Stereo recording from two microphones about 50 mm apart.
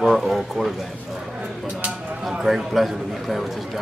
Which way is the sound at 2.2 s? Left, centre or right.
Centre.